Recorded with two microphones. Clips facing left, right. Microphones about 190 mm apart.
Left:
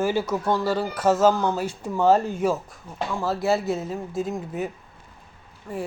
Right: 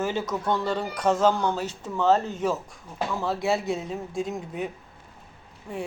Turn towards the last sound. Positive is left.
turn(degrees=0)  # may be behind; listen again after turning